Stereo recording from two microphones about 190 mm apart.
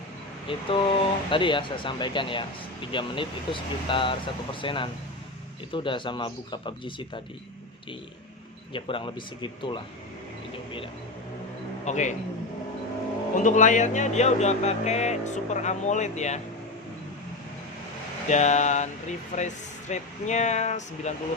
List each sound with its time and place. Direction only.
0.4 s speech: 30° left (ahead or behind)
8.7 s speech: 25° left (ahead or behind)
11.9 s speech: 40° left (ahead or behind)
13.3 s speech: 40° left (ahead or behind)
18.3 s speech: 40° left (ahead or behind)